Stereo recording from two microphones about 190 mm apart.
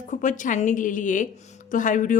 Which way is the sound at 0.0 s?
40° left (ahead or behind).